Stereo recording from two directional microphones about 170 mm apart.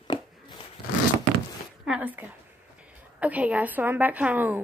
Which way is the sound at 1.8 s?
10° right (ahead or behind).